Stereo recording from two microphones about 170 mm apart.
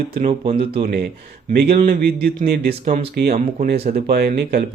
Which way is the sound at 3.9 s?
60° right (ahead or behind).